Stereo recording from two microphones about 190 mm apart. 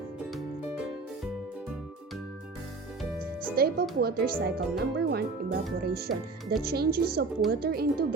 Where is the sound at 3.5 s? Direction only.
50° right (ahead or behind).